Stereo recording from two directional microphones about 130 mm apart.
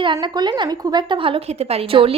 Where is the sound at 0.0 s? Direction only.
35° right (ahead or behind).